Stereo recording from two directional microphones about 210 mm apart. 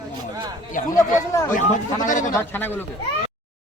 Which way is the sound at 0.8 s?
40° left (ahead or behind).